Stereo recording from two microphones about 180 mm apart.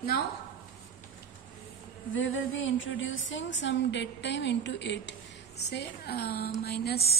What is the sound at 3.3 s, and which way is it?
A woman's voice, 90° left.